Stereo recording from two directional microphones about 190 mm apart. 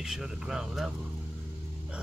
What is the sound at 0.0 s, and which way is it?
Speech, centre (ahead or behind).